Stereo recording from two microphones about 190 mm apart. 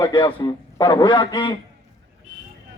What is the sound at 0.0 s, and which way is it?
A man's voice, 25° left (ahead or behind).